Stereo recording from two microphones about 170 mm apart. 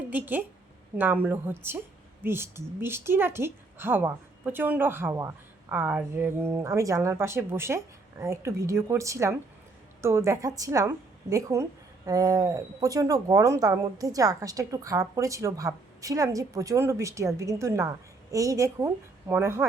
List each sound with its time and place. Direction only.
0.1 s a woman's voice: 10° right (ahead or behind)